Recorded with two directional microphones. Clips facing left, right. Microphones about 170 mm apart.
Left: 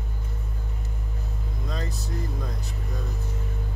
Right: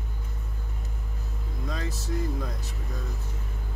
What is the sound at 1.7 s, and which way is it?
Speech, centre (ahead or behind).